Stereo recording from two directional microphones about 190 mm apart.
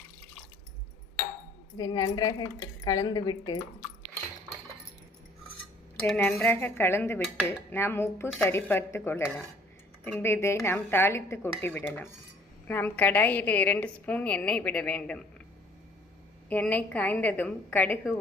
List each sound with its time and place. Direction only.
1.7 s speech: 20° left (ahead or behind)
6.1 s a woman's voice: 10° left (ahead or behind)
16.5 s a woman's voice: 10° left (ahead or behind)